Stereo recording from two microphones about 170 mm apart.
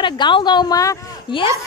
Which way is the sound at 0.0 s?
25° left (ahead or behind).